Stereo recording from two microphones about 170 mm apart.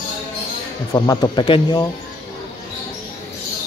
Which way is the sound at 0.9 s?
20° left (ahead or behind).